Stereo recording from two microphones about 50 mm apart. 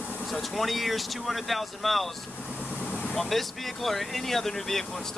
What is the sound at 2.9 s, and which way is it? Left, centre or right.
Vehicle, left.